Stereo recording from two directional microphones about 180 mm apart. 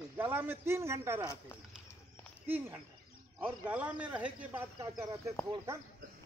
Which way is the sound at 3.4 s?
10° right (ahead or behind).